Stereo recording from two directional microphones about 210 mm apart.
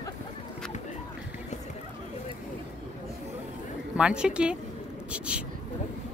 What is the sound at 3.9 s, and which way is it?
Speech, 5° right (ahead or behind).